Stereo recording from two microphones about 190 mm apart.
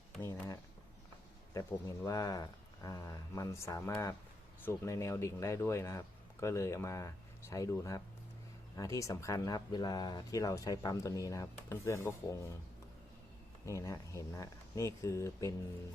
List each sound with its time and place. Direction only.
0.2 s speech: 15° left (ahead or behind)
2.0 s speech: 20° left (ahead or behind)
13.7 s speech: 15° left (ahead or behind)